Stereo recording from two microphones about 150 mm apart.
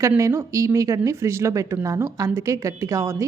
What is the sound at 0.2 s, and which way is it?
A woman's voice, 20° right (ahead or behind).